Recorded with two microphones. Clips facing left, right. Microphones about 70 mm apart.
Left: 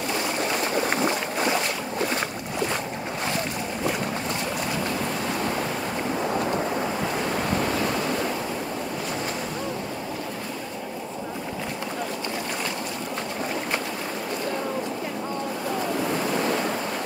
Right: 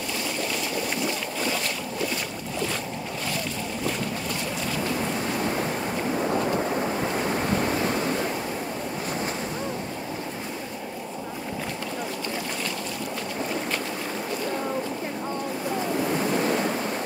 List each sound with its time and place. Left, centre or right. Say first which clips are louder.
0.4 s boat: left 5 dB; left
6.1 s waves: right 1 dB; centre
7.7 s waves: even; right
16.0 s waves: right 2 dB; centre